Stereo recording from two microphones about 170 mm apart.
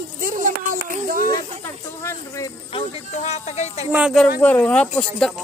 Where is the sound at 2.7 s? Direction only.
40° left (ahead or behind).